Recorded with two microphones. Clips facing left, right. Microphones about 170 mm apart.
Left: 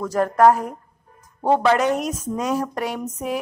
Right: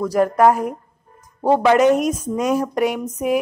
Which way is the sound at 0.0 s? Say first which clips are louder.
Right 1 dB; 15° right (ahead or behind).